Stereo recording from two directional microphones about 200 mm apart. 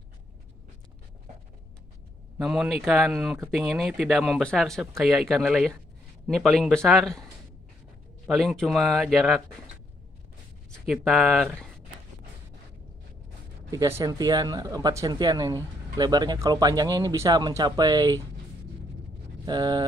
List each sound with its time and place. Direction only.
2.3 s speech: centre (ahead or behind)
8.3 s speech: centre (ahead or behind)
10.9 s speech: centre (ahead or behind)
13.7 s speech: 15° right (ahead or behind)
19.4 s speech: 20° right (ahead or behind)